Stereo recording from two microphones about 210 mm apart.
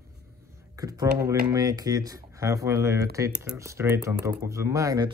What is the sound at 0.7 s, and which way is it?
Speech, 15° right (ahead or behind).